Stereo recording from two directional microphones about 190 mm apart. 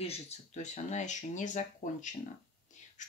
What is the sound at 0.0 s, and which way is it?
Speech, 35° left (ahead or behind).